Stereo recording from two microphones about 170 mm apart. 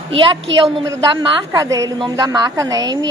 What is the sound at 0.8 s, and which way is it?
A woman's voice, 20° right (ahead or behind).